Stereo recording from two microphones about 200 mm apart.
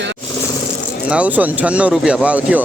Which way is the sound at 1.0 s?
5° right (ahead or behind).